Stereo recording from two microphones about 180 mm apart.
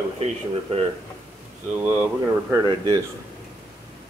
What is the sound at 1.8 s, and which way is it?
Speech, 10° right (ahead or behind).